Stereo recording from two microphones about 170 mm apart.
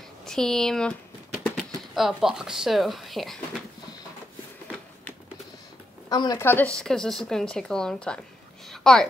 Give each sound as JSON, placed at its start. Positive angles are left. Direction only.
{"t": 0.2, "sound": "speech", "side_deg": 5}
{"t": 2.0, "sound": "speech", "side_deg": 0}
{"t": 6.0, "sound": "speech", "side_deg": 25}
{"t": 6.4, "sound": "speech", "side_deg": 10}